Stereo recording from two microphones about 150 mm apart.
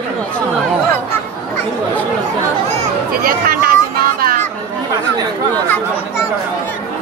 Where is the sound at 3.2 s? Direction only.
75° right (ahead or behind).